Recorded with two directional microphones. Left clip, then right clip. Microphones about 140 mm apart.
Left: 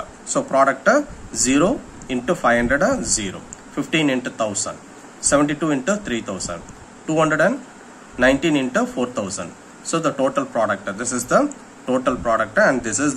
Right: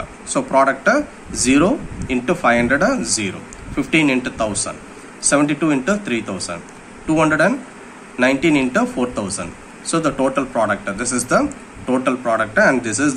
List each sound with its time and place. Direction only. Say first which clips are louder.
0.3 s speech: right 2 dB; 40° left (ahead or behind)